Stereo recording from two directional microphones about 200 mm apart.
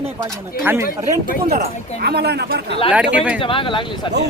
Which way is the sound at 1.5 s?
50° right (ahead or behind).